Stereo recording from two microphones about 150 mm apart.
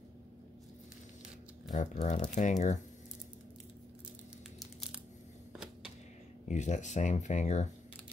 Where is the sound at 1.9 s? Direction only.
55° left (ahead or behind).